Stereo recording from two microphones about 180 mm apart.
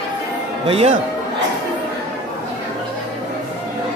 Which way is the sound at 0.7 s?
35° right (ahead or behind).